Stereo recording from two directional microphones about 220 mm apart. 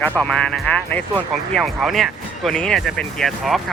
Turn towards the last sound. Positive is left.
turn(degrees=0)  # may be behind; listen again after turning